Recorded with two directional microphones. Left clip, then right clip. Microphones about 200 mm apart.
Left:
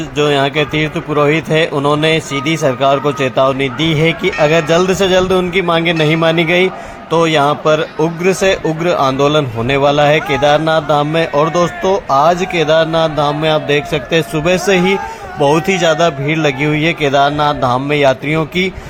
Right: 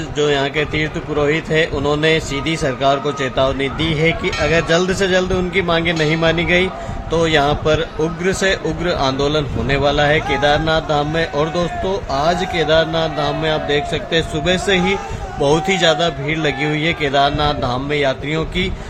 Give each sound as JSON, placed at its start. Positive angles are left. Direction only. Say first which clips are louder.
{"t": 0.2, "sound": "speech", "louder": "left 4 dB", "side_deg": 20}